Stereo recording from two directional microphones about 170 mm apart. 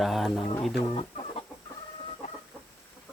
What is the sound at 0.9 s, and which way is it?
Chicken, 35° left (ahead or behind).